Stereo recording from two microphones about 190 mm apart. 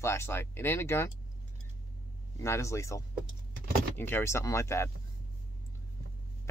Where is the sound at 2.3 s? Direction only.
15° left (ahead or behind).